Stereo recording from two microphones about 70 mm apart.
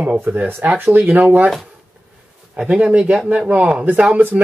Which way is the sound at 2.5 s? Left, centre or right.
Centre.